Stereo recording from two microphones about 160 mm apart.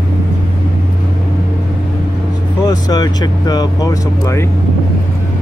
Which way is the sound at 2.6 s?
25° left (ahead or behind).